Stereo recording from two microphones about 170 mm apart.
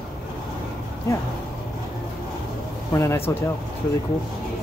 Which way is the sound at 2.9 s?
20° left (ahead or behind).